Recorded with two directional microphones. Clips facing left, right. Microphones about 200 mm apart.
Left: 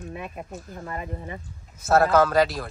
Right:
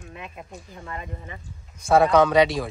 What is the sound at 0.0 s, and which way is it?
Speech, 35° left (ahead or behind).